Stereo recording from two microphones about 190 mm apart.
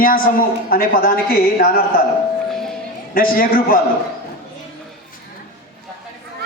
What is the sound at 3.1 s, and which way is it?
Speech, 50° left (ahead or behind).